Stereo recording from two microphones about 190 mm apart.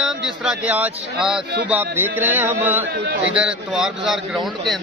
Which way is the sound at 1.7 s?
10° right (ahead or behind).